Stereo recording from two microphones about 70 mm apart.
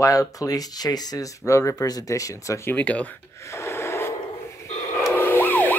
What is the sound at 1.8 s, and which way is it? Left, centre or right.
Speech, left.